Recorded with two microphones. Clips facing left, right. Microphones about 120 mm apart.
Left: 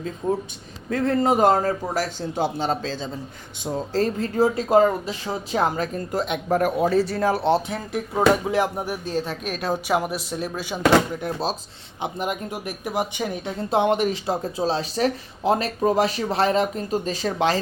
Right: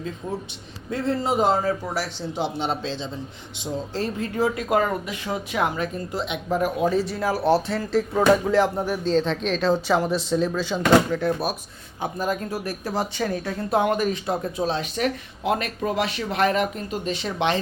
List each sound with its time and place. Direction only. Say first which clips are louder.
0.2 s speech: left 8 dB; 30° left (ahead or behind)
0.9 s a man's voice: left 4 dB; 50° left (ahead or behind)
7.2 s speech: left 1 dB; 25° left (ahead or behind)